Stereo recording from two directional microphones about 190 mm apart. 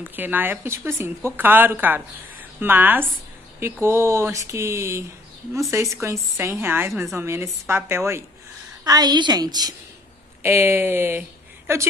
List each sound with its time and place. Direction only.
0.1 s a woman's voice: 10° right (ahead or behind)